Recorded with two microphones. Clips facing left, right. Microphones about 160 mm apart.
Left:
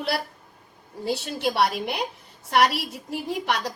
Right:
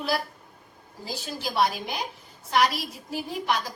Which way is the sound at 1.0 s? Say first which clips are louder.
Left 8 dB; 70° left (ahead or behind).